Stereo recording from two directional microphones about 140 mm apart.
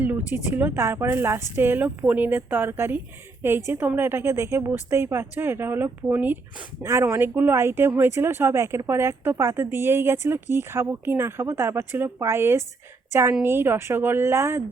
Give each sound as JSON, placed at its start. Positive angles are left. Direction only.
{"t": 0.5, "sound": "speech", "side_deg": -15}